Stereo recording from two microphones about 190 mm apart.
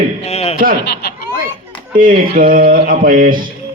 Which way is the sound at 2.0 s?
45° right (ahead or behind).